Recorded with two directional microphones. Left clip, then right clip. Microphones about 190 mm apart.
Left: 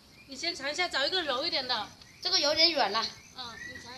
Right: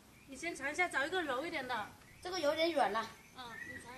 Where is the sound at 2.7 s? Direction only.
25° left (ahead or behind).